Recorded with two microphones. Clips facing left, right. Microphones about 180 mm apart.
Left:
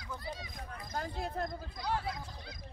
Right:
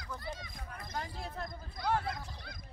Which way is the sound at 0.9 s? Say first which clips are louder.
Left 4 dB; 40° left (ahead or behind).